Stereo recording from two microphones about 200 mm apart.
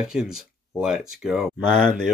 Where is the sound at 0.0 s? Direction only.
5° right (ahead or behind).